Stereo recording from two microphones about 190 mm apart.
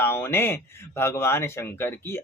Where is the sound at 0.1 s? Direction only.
10° left (ahead or behind).